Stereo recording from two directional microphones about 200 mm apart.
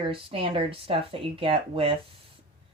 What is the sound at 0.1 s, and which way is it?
Speech, 25° right (ahead or behind).